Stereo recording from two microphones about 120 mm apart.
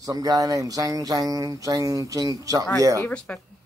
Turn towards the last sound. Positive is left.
turn(degrees=15)  # may be behind; listen again after turning